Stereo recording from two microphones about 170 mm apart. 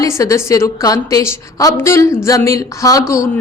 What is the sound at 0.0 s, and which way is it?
A woman's voice, 20° left (ahead or behind).